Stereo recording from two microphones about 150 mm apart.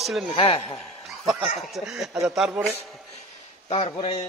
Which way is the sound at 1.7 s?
Centre (ahead or behind).